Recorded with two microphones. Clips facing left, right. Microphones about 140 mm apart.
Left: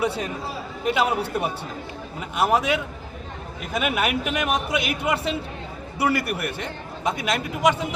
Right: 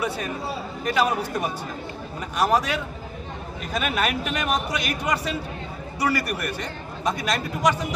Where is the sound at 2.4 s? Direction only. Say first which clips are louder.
Left 1 dB; 20° left (ahead or behind).